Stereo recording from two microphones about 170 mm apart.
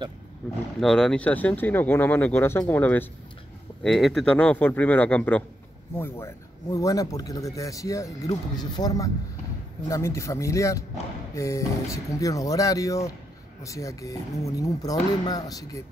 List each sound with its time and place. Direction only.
0.7 s speech: centre (ahead or behind); by 15.8 s 20° left (ahead or behind)